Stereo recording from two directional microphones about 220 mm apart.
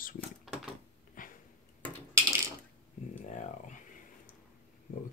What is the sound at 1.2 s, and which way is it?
Sniff, 40° left (ahead or behind).